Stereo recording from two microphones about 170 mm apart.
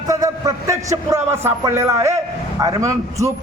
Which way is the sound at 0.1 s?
20° right (ahead or behind).